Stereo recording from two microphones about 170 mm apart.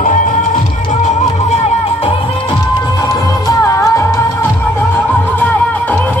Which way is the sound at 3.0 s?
20° left (ahead or behind).